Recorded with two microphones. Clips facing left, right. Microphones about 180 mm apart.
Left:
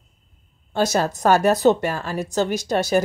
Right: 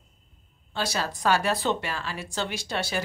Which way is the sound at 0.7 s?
45° left (ahead or behind).